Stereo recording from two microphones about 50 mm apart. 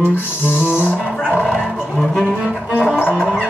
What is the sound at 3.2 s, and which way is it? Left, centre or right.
Music, centre.